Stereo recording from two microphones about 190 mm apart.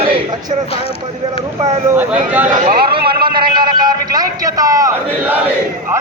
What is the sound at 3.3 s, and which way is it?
A man's voice, 25° right (ahead or behind).